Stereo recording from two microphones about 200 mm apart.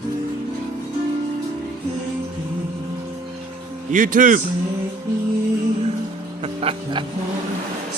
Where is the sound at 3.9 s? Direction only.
40° right (ahead or behind).